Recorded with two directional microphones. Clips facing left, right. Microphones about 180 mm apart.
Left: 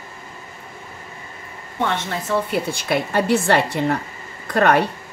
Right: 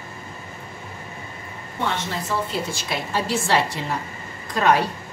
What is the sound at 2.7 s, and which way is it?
A woman's voice, 60° left (ahead or behind).